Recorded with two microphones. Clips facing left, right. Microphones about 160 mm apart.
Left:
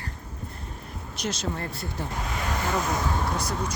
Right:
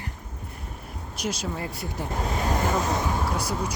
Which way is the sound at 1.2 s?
10° right (ahead or behind).